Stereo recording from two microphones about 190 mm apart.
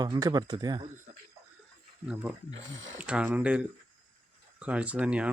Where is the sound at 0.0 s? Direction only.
20° right (ahead or behind).